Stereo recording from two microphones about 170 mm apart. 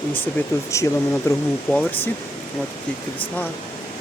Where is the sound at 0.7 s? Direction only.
15° left (ahead or behind).